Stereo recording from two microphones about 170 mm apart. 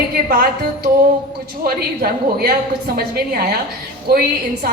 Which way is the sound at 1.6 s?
65° right (ahead or behind).